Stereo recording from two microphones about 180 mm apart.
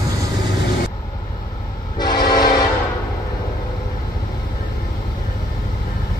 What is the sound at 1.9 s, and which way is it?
Train, 25° left (ahead or behind).